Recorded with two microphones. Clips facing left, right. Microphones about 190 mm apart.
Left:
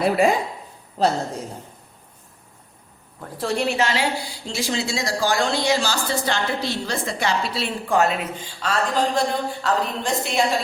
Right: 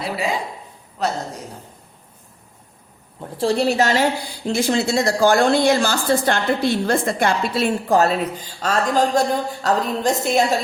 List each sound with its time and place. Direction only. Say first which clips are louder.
0.0 s speech: left 6 dB; 50° left (ahead or behind)
1.0 s a woman's voice: left 3 dB; 30° left (ahead or behind)
3.2 s a woman's voice: right 5 dB; 30° right (ahead or behind)